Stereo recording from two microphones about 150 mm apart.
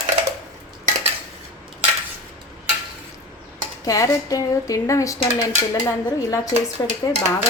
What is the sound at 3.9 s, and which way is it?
Speech, 20° left (ahead or behind).